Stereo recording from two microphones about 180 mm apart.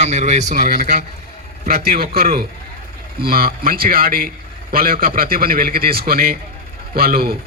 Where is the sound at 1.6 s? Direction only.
60° right (ahead or behind).